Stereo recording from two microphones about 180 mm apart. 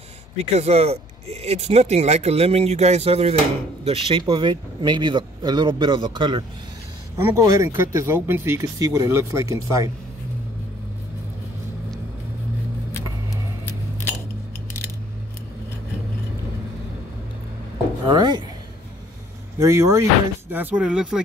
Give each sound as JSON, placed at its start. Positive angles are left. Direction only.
{"t": 0.6, "sound": "speech", "side_deg": -35}
{"t": 18.0, "sound": "speech", "side_deg": -25}
{"t": 19.6, "sound": "speech", "side_deg": -15}